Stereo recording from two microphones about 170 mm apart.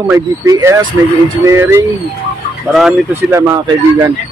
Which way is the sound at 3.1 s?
15° right (ahead or behind).